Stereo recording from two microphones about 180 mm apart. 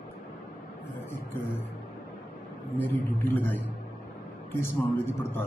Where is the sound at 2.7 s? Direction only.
10° left (ahead or behind).